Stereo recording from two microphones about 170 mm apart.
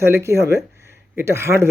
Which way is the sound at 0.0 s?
15° right (ahead or behind).